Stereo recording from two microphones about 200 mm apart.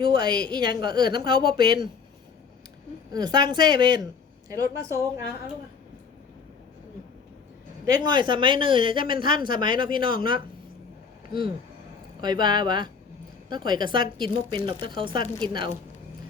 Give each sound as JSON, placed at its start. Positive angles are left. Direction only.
{"t": 0.0, "sound": "speech", "side_deg": -25}
{"t": 3.1, "sound": "a woman's voice", "side_deg": -20}
{"t": 8.0, "sound": "speech", "side_deg": -20}
{"t": 12.2, "sound": "speech", "side_deg": -20}